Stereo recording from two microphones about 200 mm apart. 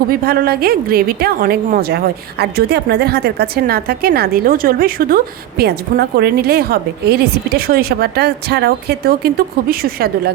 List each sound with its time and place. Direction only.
0.1 s a woman's voice: 50° right (ahead or behind)